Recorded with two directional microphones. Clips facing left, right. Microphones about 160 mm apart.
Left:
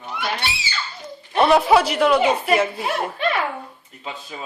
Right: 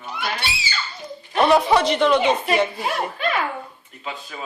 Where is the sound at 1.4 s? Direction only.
5° left (ahead or behind).